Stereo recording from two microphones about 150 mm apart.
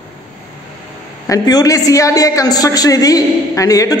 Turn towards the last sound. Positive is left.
turn(degrees=25)  # may be behind; listen again after turning